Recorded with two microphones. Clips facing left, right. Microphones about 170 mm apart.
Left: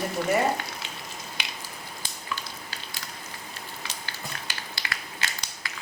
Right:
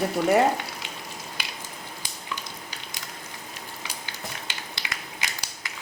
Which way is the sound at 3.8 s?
20° right (ahead or behind).